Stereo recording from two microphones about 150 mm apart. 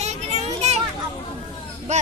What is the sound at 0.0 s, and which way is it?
Children playing, 45° right (ahead or behind).